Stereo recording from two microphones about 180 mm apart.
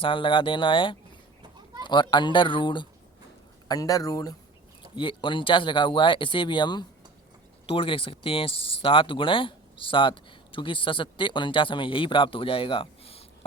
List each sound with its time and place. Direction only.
0.0 s speech: 30° left (ahead or behind)